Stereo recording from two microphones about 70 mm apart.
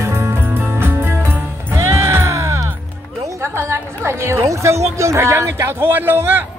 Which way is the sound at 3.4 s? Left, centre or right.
Right.